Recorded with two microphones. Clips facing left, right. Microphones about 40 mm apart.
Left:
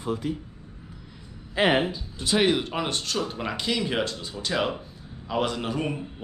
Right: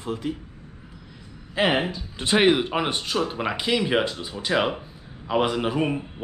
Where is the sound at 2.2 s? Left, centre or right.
Right.